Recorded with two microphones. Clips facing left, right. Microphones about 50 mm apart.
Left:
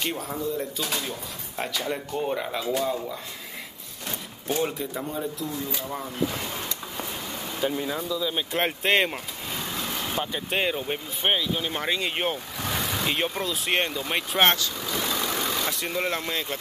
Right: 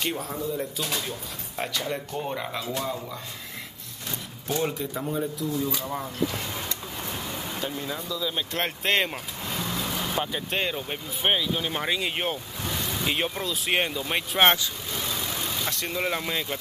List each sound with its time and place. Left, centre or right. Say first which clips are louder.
0.0 s speech: even; centre
4.6 s speech: right 1 dB; centre
7.6 s speech: left 8 dB; centre
10.6 s speech: left 3 dB; centre
12.6 s vehicle: left 2 dB; left
13.0 s speech: right 1 dB; centre
15.0 s vehicle: left 4 dB; left
15.6 s speech: left 1 dB; centre